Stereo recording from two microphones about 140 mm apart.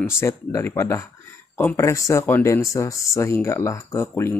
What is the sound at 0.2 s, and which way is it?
Speech, 20° left (ahead or behind).